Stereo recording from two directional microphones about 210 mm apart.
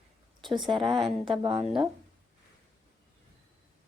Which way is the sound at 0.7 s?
25° right (ahead or behind).